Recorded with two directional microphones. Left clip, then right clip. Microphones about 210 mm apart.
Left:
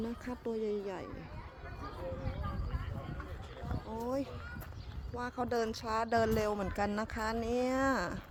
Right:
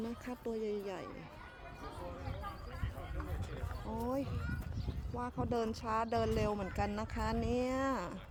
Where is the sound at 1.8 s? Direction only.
50° right (ahead or behind).